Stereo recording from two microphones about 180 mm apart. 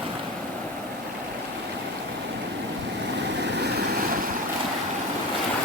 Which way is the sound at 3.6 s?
55° right (ahead or behind).